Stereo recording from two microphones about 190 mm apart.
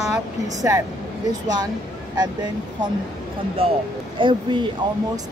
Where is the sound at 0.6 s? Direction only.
15° right (ahead or behind).